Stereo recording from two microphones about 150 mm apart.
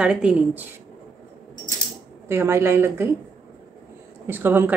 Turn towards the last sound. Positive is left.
turn(degrees=-15)  # may be behind; listen again after turning